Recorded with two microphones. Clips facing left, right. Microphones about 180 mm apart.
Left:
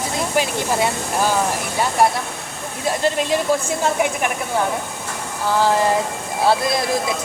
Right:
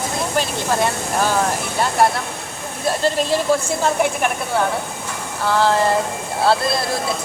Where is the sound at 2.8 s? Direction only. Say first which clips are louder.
Right 1 dB; 15° left (ahead or behind).